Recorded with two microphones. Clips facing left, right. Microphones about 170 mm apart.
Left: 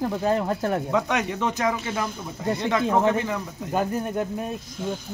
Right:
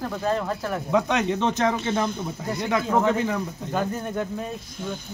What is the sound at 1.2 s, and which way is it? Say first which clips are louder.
Speech: right 2 dB; 25° right (ahead or behind).